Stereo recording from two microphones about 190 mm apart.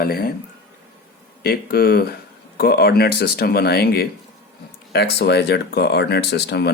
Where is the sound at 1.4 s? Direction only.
55° left (ahead or behind).